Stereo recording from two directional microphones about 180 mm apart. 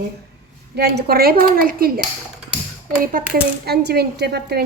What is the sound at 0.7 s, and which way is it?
Speech, 60° right (ahead or behind).